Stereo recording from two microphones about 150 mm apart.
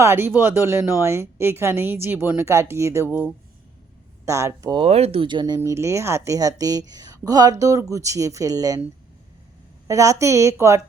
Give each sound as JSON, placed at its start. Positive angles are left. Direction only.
{"t": 0.0, "sound": "a woman's voice", "side_deg": -15}
{"t": 4.8, "sound": "speech", "side_deg": -45}
{"t": 5.5, "sound": "a woman's voice", "side_deg": -20}
{"t": 9.8, "sound": "a woman's voice", "side_deg": -20}